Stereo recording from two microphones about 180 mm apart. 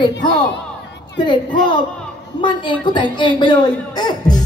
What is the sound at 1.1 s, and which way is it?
A woman's voice, 25° left (ahead or behind).